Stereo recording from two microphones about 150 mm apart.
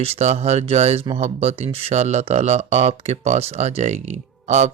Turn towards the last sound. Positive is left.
turn(degrees=-50)  # may be behind; listen again after turning